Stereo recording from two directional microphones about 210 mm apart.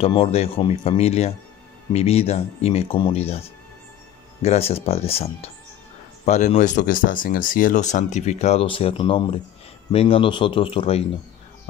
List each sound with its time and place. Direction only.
0.0 s speech: 25° left (ahead or behind)